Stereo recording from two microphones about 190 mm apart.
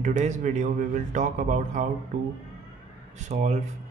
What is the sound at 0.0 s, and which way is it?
Speech, 40° right (ahead or behind).